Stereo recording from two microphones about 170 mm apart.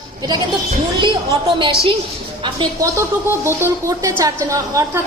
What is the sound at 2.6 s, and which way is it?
A woman's voice, 20° right (ahead or behind).